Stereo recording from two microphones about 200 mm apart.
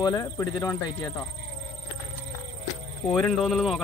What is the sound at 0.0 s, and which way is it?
A man's voice, 15° left (ahead or behind).